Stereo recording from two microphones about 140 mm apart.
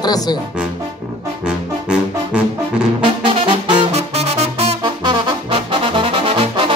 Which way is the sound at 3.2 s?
40° right (ahead or behind).